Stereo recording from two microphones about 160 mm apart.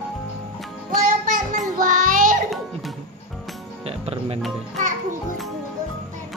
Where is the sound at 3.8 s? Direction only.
40° right (ahead or behind).